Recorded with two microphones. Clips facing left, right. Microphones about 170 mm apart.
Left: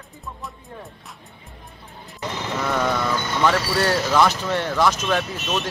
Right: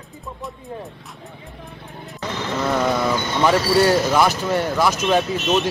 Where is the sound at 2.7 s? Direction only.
10° right (ahead or behind).